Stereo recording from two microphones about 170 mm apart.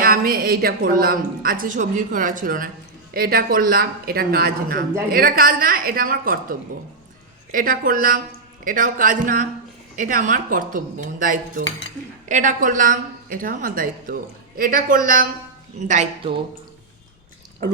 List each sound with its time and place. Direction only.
0.0 s a woman's voice: 60° right (ahead or behind)